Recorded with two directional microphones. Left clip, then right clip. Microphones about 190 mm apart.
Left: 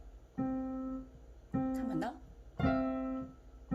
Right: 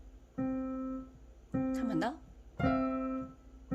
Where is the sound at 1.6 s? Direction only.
40° right (ahead or behind).